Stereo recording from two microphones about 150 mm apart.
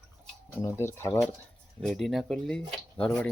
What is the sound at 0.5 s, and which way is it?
Speech, 15° left (ahead or behind).